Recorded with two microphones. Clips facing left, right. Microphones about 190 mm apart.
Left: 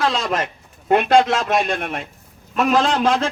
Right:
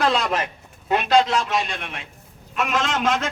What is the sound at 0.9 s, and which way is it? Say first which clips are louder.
A man's voice: left 4 dB; 55° left (ahead or behind).